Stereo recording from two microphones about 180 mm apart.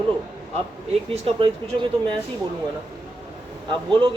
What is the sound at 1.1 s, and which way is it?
Speech, 35° right (ahead or behind).